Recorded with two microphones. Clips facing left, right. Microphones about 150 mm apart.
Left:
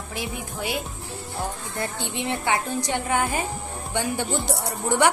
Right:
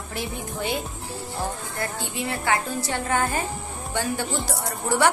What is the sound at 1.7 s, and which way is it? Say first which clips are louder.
A woman's voice: even; 25° left (ahead or behind).